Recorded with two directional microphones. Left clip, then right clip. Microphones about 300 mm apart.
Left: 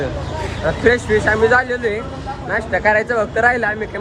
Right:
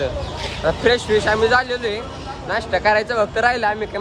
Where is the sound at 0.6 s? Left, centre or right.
Centre.